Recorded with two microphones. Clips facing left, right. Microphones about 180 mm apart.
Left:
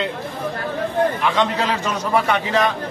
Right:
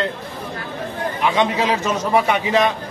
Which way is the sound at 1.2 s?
10° right (ahead or behind).